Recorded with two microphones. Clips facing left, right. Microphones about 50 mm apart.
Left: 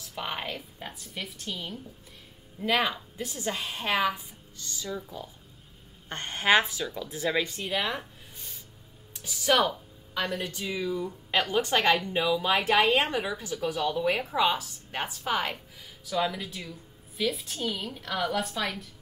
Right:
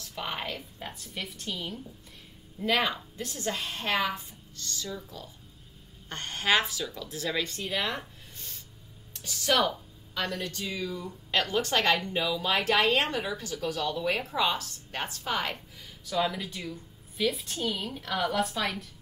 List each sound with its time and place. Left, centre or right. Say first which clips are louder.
0.0 s a woman's voice: left 1 dB; centre